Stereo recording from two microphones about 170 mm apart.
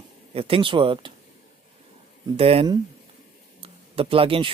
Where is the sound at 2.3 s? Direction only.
35° right (ahead or behind).